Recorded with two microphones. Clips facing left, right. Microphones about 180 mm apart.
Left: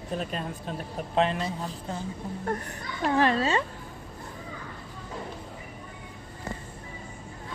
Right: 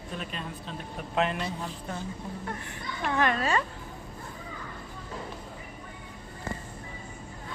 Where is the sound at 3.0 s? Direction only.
35° left (ahead or behind).